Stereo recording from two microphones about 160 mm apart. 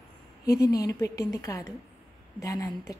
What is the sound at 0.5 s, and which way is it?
A woman's voice, 20° left (ahead or behind).